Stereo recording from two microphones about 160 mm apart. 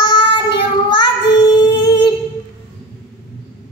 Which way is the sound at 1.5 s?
25° left (ahead or behind).